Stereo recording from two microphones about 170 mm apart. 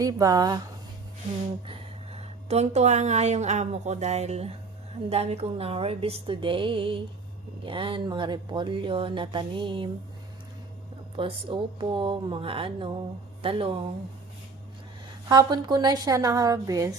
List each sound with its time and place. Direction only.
0.0 s speech: 20° right (ahead or behind)
2.1 s speech: 40° right (ahead or behind)
11.2 s speech: 30° right (ahead or behind)
15.3 s speech: 25° right (ahead or behind)